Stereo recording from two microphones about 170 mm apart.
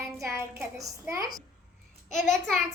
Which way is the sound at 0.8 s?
20° right (ahead or behind).